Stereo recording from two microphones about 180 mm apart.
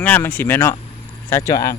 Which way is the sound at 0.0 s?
10° left (ahead or behind).